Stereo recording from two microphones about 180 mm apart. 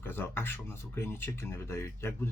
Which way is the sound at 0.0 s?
10° left (ahead or behind).